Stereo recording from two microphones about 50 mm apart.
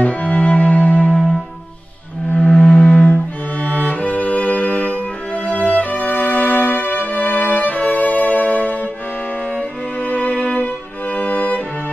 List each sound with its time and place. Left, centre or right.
0.0 s music: left
2.4 s music: centre
2.8 s cello: left
3.6 s music: left
10.0 s music: left